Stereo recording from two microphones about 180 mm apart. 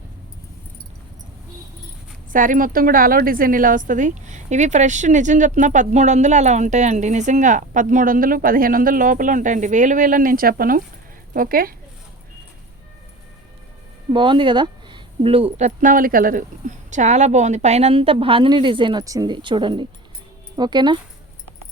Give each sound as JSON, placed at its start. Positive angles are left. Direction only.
{"t": 2.3, "sound": "a woman's voice", "side_deg": -50}
{"t": 14.1, "sound": "a woman's voice", "side_deg": -25}